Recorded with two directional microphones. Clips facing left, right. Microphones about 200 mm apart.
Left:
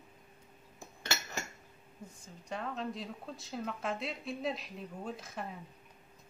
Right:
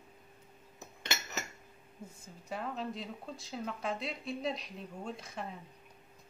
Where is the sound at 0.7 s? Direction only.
20° right (ahead or behind).